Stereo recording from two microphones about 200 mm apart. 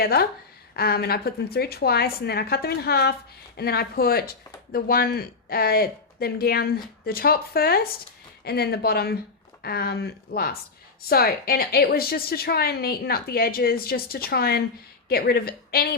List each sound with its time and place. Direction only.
0.0 s speech: 50° left (ahead or behind)